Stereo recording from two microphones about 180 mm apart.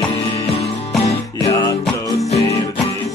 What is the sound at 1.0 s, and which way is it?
Music, 25° left (ahead or behind).